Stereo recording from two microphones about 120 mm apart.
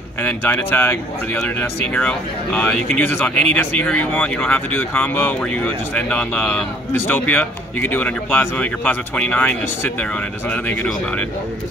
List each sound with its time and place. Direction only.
0.2 s speech: 15° left (ahead or behind)